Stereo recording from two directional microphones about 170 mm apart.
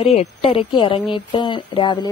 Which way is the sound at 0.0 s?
35° left (ahead or behind).